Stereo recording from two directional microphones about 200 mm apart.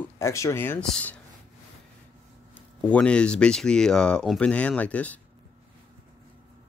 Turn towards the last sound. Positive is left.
turn(degrees=5)  # may be behind; listen again after turning